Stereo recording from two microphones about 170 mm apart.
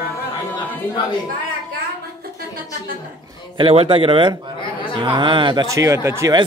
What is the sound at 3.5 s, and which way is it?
A man's voice, 30° right (ahead or behind).